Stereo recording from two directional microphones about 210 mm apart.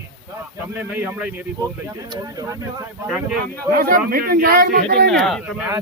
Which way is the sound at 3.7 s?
45° right (ahead or behind).